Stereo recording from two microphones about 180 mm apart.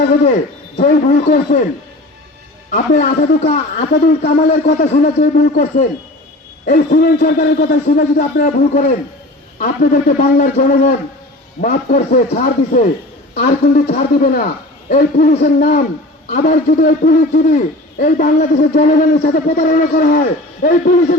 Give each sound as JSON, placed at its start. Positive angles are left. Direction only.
{"t": 0.8, "sound": "a man's voice", "side_deg": 50}
{"t": 2.7, "sound": "a man's voice", "side_deg": 50}